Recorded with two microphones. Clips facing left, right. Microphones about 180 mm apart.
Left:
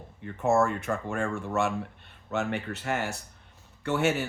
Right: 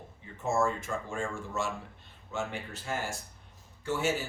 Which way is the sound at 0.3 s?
60° left (ahead or behind).